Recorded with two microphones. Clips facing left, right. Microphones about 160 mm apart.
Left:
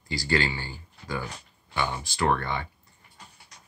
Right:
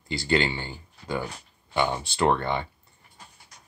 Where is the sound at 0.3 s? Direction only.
20° right (ahead or behind).